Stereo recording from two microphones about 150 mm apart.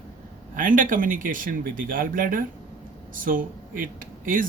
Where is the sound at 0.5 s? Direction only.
65° right (ahead or behind).